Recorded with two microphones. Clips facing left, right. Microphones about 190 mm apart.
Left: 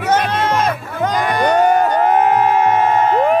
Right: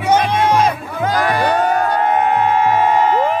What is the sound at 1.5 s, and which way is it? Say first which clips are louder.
Crowd: left 3 dB; 10° left (ahead or behind).